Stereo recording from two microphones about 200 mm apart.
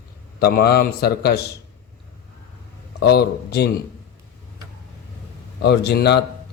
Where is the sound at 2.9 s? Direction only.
55° left (ahead or behind).